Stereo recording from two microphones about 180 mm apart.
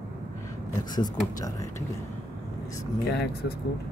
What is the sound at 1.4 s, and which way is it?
Speech, 20° left (ahead or behind).